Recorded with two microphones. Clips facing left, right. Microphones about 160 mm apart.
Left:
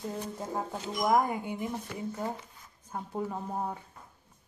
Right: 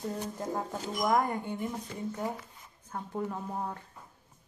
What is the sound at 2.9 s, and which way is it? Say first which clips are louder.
Speech: even; 10° left (ahead or behind).